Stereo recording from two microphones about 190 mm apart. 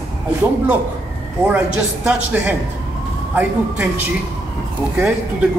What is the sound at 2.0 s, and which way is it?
A woman's voice, 10° right (ahead or behind).